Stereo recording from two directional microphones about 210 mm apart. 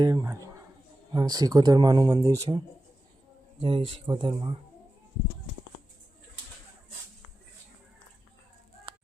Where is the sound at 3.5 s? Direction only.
25° right (ahead or behind).